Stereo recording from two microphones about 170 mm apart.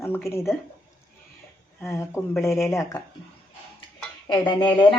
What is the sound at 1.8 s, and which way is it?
Speech, 15° left (ahead or behind).